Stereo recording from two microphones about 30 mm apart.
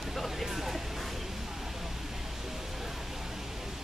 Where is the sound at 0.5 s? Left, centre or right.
Centre.